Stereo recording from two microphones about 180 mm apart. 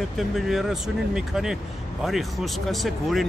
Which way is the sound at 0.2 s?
Centre (ahead or behind).